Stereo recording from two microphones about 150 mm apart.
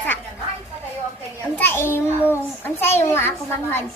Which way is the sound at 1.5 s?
15° left (ahead or behind).